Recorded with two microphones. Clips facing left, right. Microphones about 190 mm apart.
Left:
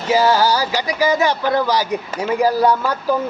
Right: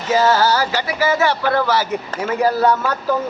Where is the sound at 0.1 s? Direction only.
10° left (ahead or behind).